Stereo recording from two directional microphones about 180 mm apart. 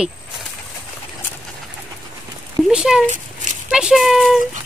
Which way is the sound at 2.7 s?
5° right (ahead or behind).